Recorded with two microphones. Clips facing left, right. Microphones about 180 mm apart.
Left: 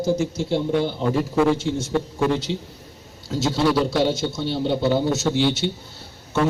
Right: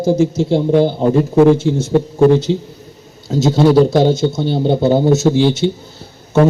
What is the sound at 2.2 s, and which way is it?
A man's voice, 45° right (ahead or behind).